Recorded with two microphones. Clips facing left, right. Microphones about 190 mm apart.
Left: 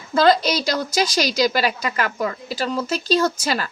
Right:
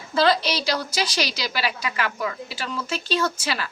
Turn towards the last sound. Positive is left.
turn(degrees=45)  # may be behind; listen again after turning